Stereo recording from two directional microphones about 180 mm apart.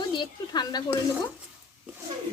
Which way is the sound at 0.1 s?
25° left (ahead or behind).